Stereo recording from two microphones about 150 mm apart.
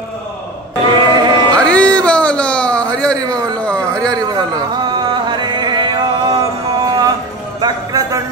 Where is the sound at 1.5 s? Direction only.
5° left (ahead or behind).